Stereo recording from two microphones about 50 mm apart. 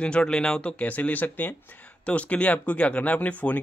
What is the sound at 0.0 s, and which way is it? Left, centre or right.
Speech, centre.